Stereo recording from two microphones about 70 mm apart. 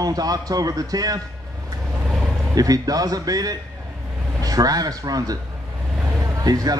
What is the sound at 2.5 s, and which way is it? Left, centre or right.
A man's voice, right.